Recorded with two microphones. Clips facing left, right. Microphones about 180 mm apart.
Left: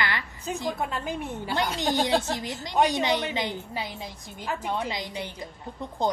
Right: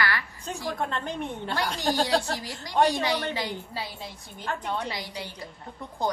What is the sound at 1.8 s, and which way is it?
A woman's voice, 20° left (ahead or behind).